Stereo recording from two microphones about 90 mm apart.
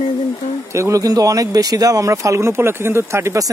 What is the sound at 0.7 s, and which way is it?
Speech, 35° right (ahead or behind).